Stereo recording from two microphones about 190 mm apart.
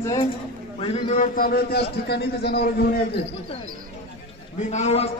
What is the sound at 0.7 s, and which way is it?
A man's voice, 30° left (ahead or behind).